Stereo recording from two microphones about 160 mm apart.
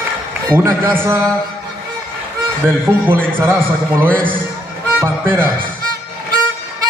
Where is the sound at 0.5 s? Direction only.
15° right (ahead or behind).